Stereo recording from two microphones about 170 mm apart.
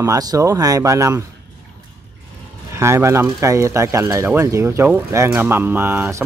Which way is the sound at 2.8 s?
15° right (ahead or behind).